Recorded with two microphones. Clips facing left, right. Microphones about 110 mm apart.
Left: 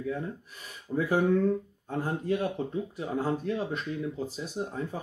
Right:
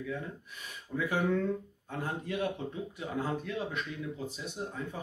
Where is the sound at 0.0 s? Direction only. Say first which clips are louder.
Left 5 dB; 35° left (ahead or behind).